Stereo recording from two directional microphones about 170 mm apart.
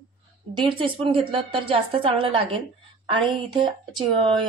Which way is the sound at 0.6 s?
30° right (ahead or behind).